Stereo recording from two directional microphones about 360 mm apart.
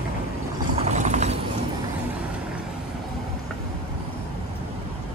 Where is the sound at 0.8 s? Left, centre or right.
Centre.